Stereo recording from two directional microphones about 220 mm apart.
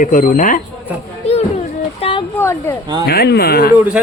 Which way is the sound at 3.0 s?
45° left (ahead or behind).